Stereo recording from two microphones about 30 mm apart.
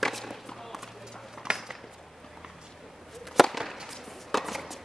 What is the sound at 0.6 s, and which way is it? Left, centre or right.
Run, centre.